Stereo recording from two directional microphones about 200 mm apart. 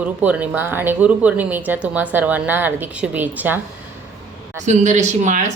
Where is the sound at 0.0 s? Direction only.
5° right (ahead or behind).